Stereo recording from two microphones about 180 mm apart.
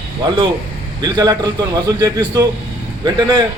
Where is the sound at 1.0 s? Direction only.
20° right (ahead or behind).